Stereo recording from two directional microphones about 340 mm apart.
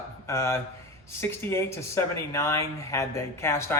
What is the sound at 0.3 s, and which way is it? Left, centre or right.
Speech, centre.